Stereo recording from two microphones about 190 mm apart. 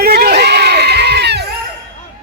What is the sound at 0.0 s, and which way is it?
Goat, 55° right (ahead or behind).